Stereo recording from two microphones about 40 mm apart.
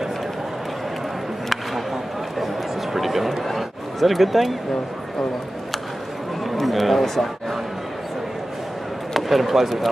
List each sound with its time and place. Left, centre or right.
2.3 s a sound: centre
6.4 s speech: centre
9.1 s speech: centre